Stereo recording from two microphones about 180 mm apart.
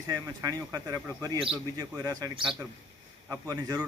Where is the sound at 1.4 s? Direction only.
30° right (ahead or behind).